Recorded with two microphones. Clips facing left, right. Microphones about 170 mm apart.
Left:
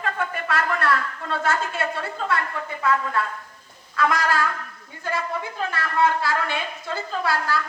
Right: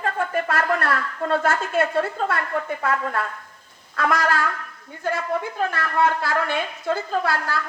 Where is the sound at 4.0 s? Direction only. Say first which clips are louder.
Even; 50° right (ahead or behind).